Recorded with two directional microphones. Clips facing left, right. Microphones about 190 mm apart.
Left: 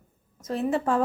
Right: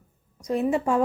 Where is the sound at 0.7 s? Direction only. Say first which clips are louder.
Left 1 dB; 15° right (ahead or behind).